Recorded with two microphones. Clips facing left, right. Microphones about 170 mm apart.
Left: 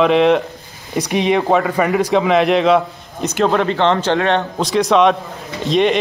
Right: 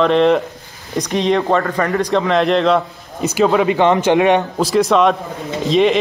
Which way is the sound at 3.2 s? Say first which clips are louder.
Right 2 dB; 5° right (ahead or behind).